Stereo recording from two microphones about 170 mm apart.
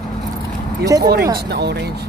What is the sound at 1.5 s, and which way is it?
Speech, 75° right (ahead or behind).